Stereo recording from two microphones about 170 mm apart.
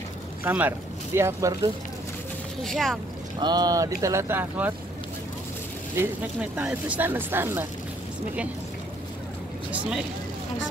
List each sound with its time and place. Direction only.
0.4 s speech: 10° right (ahead or behind)
2.6 s speech: centre (ahead or behind)
3.3 s speech: 25° right (ahead or behind)
5.9 s speech: 10° right (ahead or behind)
9.7 s speech: 5° right (ahead or behind)